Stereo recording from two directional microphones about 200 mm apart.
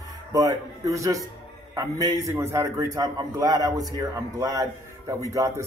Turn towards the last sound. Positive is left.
turn(degrees=-15)  # may be behind; listen again after turning